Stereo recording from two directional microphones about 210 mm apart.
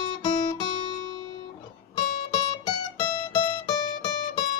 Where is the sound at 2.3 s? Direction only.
25° left (ahead or behind).